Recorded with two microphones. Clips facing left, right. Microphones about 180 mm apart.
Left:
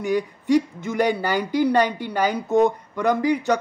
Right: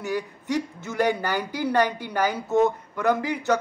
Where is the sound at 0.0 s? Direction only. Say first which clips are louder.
Left 6 dB; 15° left (ahead or behind).